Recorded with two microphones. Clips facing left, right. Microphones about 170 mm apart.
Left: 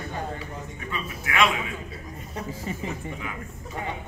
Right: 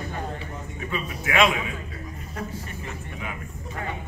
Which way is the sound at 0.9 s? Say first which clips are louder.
Right 4 dB; 20° right (ahead or behind).